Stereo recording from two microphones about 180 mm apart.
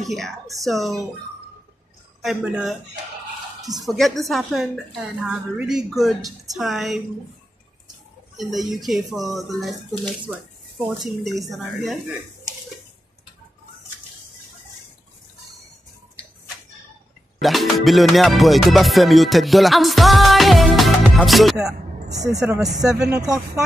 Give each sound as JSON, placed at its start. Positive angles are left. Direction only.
{"t": 0.0, "sound": "speech", "side_deg": 0}
{"t": 2.2, "sound": "speech", "side_deg": -5}
{"t": 3.8, "sound": "speech", "side_deg": 0}
{"t": 8.4, "sound": "speech", "side_deg": 0}
{"t": 17.4, "sound": "music", "side_deg": 0}
{"t": 23.0, "sound": "speech", "side_deg": -20}